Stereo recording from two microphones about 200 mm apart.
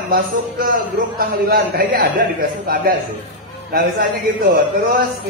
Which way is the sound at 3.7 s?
45° right (ahead or behind).